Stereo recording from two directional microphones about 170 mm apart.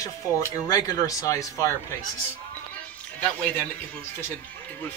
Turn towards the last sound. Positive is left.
turn(degrees=10)  # may be behind; listen again after turning